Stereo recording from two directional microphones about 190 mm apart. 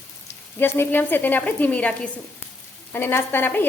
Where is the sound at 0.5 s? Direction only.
10° left (ahead or behind).